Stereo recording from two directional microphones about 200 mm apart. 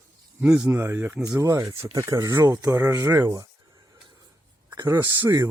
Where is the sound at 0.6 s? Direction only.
10° right (ahead or behind).